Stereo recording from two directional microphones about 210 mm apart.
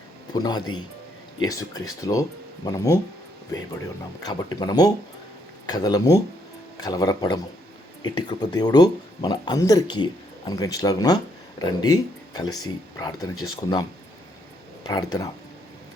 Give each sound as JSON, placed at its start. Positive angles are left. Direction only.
{"t": 0.3, "sound": "speech", "side_deg": 20}
{"t": 4.2, "sound": "speech", "side_deg": 20}
{"t": 14.8, "sound": "speech", "side_deg": 20}